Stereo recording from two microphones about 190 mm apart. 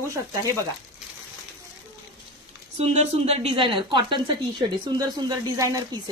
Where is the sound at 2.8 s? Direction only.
35° right (ahead or behind).